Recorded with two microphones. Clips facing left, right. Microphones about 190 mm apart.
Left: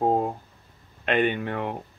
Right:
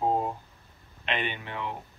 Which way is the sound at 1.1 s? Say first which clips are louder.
Left 9 dB; 50° left (ahead or behind).